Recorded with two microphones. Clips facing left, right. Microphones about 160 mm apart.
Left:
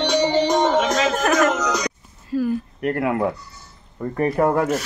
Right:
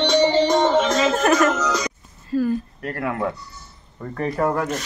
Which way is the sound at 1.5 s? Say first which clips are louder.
Even; 15° left (ahead or behind).